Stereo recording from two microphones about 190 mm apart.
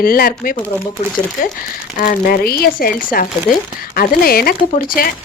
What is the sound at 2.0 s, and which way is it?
Speech, 50° left (ahead or behind).